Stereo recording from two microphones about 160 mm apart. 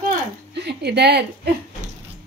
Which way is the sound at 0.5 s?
90° right.